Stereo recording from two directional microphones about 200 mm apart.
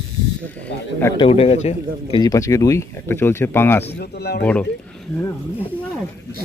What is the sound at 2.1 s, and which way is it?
Speech, 20° left (ahead or behind).